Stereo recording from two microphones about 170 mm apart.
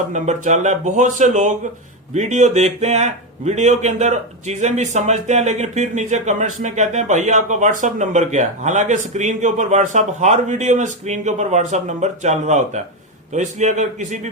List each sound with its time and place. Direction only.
0.1 s a man's voice: 45° right (ahead or behind)